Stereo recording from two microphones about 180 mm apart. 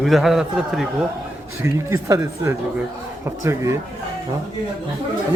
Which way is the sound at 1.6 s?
15° right (ahead or behind).